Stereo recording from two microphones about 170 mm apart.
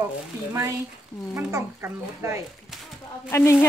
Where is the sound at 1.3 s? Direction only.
15° right (ahead or behind).